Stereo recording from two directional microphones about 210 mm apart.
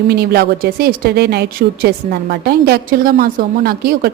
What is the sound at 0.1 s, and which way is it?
A woman's voice, 50° right (ahead or behind).